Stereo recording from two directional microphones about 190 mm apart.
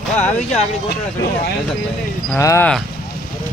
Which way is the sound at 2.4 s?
15° left (ahead or behind).